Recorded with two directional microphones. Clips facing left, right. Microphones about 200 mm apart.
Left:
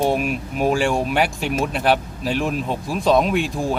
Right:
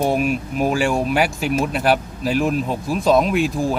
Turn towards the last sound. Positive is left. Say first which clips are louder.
# right 2 dB
turn(degrees=0)  # may be behind; listen again after turning